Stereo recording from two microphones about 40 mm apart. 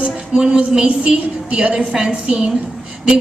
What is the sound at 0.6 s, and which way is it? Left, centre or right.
A woman's voice, right.